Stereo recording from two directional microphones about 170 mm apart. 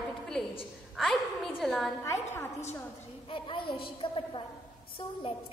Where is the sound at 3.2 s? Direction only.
30° left (ahead or behind).